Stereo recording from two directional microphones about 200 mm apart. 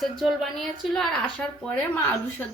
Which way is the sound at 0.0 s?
Centre (ahead or behind).